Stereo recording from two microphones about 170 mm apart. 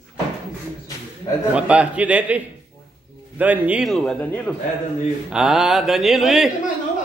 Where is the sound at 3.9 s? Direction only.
5° left (ahead or behind).